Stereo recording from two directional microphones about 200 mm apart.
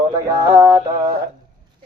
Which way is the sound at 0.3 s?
15° right (ahead or behind).